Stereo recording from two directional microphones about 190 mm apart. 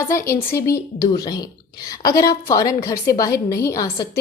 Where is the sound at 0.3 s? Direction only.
15° left (ahead or behind).